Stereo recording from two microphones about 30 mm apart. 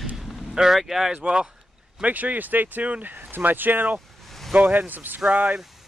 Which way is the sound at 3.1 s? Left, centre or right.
Right.